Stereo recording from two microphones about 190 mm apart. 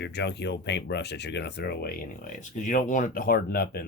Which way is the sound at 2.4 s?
40° left (ahead or behind).